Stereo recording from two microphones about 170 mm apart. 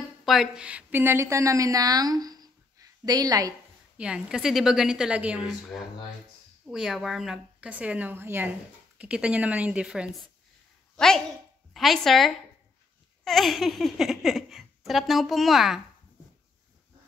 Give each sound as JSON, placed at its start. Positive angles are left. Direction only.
{"t": 0.2, "sound": "a woman's voice", "side_deg": 0}
{"t": 4.0, "sound": "a woman's voice", "side_deg": -5}